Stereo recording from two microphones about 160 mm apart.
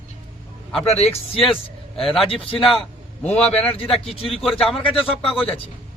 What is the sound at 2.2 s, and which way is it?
Speech, 35° left (ahead or behind).